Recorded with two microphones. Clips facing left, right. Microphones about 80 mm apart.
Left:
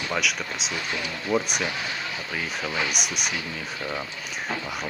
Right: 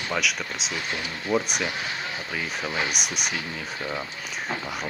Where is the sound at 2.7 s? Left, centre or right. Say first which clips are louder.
Even; right.